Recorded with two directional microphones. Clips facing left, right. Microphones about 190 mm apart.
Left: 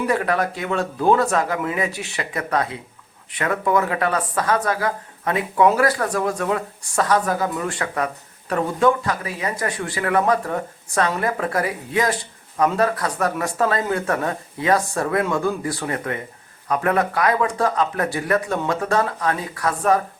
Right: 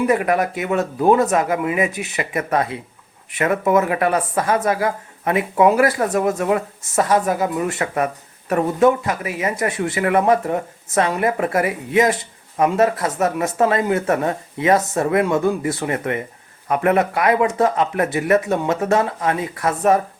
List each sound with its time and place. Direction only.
0.1 s speech: 20° right (ahead or behind)